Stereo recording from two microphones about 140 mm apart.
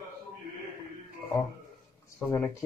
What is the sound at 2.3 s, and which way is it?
Speech, 20° left (ahead or behind).